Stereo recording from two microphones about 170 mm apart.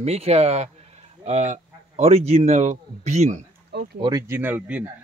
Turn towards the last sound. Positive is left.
turn(degrees=-10)  # may be behind; listen again after turning